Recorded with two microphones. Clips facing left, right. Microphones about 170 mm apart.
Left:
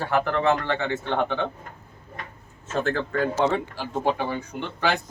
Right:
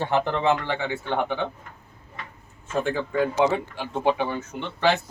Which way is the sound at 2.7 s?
10° right (ahead or behind).